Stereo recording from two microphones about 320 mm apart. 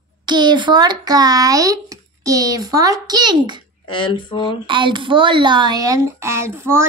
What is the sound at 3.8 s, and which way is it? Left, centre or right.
Speech, centre.